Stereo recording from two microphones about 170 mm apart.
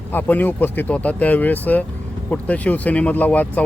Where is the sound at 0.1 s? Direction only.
10° left (ahead or behind).